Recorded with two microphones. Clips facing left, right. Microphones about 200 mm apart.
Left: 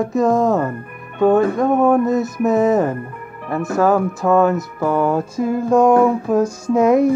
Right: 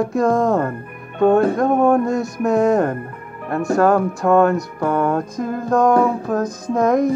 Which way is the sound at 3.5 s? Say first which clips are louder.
Right 1 dB; 5° left (ahead or behind).